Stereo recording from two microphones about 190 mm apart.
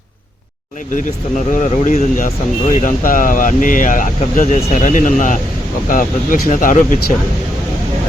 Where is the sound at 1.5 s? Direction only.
45° left (ahead or behind).